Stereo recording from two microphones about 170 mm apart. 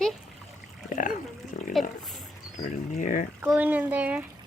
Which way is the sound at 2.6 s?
50° left (ahead or behind).